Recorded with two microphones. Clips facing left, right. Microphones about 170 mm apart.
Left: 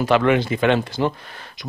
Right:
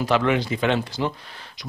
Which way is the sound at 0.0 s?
60° left (ahead or behind).